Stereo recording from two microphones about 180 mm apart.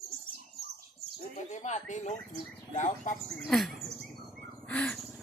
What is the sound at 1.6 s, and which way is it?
Speech, 40° left (ahead or behind).